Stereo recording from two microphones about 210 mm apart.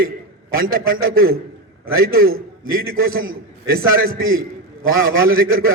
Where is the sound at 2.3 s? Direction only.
75° right (ahead or behind).